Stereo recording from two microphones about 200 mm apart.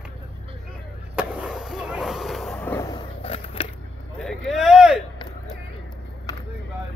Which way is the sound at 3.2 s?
30° left (ahead or behind).